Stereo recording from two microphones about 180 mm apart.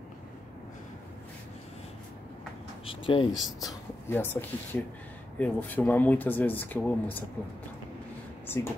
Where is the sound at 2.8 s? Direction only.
30° left (ahead or behind).